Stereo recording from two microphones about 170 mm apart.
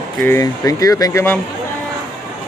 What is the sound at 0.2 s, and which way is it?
Speech, 15° left (ahead or behind).